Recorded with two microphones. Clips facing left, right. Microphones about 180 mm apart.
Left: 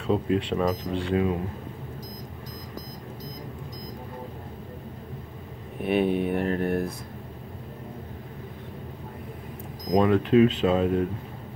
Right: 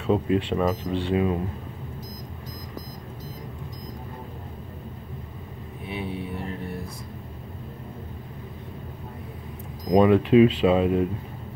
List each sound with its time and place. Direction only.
0.0 s speech: centre (ahead or behind)
5.9 s speech: 65° left (ahead or behind)
9.9 s speech: 5° right (ahead or behind)